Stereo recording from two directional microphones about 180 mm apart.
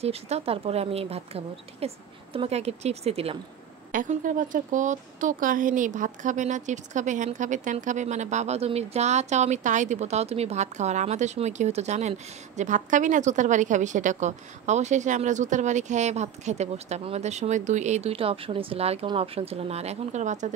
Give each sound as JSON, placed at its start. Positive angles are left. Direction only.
{"t": 0.0, "sound": "speech", "side_deg": -35}
{"t": 3.9, "sound": "speech", "side_deg": -45}